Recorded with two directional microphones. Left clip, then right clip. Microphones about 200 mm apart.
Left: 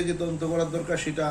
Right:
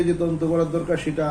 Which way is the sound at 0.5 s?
10° left (ahead or behind).